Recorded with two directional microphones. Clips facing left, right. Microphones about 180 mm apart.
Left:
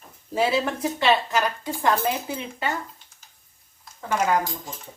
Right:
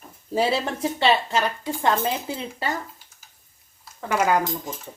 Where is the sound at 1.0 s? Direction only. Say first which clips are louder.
Even; 30° right (ahead or behind).